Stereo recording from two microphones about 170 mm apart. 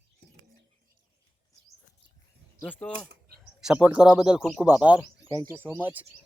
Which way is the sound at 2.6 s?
10° left (ahead or behind).